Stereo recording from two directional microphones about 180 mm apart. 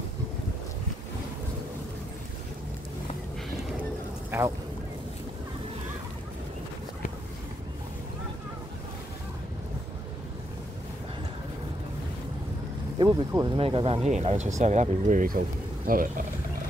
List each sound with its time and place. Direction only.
4.3 s speech: 10° right (ahead or behind)
13.0 s speech: 20° right (ahead or behind)
13.6 s speech: 30° right (ahead or behind); by 16.3 s 50° right (ahead or behind)